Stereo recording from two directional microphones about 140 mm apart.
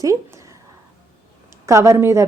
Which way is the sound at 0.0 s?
20° right (ahead or behind).